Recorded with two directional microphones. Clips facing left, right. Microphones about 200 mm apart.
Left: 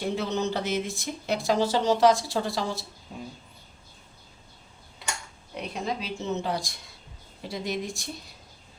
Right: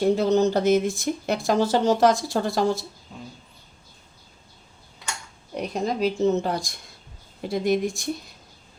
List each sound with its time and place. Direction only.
0.0 s speech: 40° right (ahead or behind)
5.5 s speech: 40° right (ahead or behind)